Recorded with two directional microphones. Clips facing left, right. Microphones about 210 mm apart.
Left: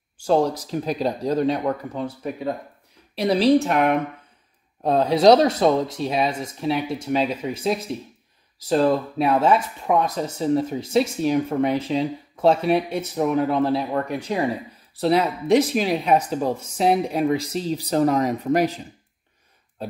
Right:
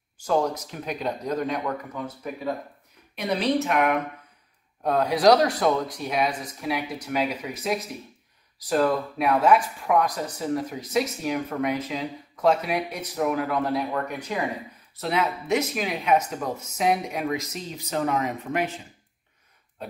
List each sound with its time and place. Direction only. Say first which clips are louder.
0.2 s speech: left 4 dB; 30° left (ahead or behind)